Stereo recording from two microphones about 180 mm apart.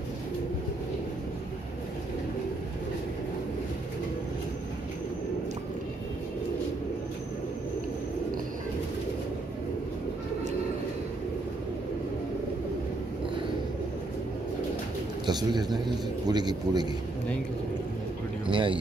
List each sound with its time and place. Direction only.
15.2 s speech: 25° right (ahead or behind)
18.5 s speech: 30° right (ahead or behind)